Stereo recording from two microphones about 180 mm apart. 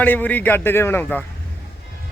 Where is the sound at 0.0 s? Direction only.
10° left (ahead or behind).